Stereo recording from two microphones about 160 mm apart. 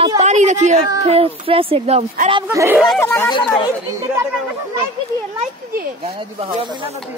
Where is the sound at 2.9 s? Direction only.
15° left (ahead or behind).